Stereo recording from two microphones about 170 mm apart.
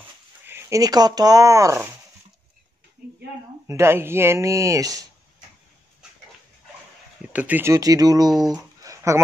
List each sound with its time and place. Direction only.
0.5 s speech: 15° right (ahead or behind)
3.6 s speech: 15° right (ahead or behind)
7.3 s speech: 10° right (ahead or behind)
8.8 s a sound: 20° right (ahead or behind)